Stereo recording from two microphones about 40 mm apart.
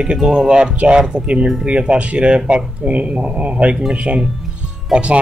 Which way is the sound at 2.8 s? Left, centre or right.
Right.